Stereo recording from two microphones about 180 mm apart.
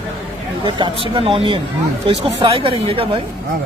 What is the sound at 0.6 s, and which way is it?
Speech, 25° right (ahead or behind).